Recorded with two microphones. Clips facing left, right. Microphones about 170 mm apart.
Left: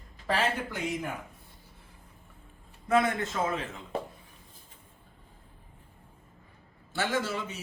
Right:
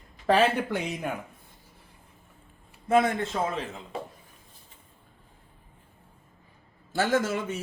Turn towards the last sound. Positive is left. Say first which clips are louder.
# right 5 dB
turn(degrees=-50)  # may be behind; listen again after turning